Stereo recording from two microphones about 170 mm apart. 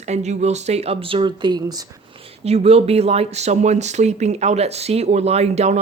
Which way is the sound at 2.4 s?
35° right (ahead or behind).